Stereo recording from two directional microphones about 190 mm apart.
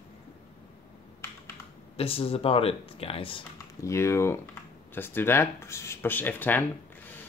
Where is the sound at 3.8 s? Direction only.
15° left (ahead or behind).